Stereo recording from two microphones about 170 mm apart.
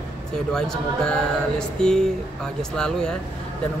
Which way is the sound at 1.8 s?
5° left (ahead or behind).